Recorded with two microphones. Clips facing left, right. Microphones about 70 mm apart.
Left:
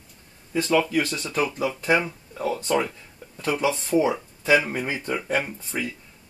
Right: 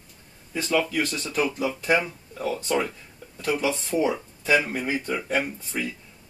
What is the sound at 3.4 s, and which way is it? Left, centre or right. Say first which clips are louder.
Speech: left 1 dB; left.